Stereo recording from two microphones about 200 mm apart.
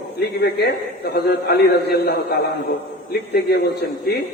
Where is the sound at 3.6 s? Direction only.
55° left (ahead or behind).